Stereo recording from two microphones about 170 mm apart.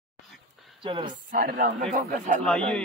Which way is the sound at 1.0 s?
55° right (ahead or behind).